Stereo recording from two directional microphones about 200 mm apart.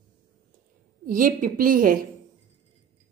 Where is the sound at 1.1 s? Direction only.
45° right (ahead or behind).